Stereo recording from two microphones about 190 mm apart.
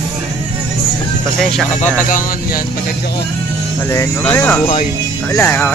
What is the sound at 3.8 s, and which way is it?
Speech, 10° left (ahead or behind).